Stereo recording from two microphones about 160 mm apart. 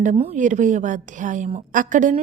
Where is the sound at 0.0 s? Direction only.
50° right (ahead or behind).